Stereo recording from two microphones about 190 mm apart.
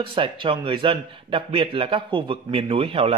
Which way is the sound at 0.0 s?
25° right (ahead or behind).